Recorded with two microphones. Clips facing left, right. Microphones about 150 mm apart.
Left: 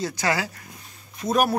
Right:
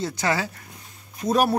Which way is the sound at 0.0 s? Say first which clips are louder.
Even; 25° right (ahead or behind).